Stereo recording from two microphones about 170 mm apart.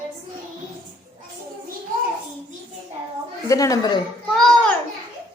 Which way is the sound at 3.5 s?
20° left (ahead or behind).